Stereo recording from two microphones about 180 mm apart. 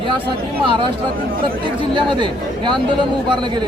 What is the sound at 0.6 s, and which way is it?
Speech, 25° right (ahead or behind).